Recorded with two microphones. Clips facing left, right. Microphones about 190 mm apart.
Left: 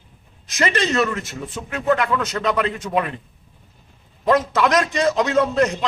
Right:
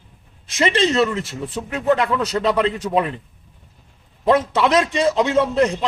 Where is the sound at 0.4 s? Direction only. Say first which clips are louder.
Right 3 dB; 30° right (ahead or behind).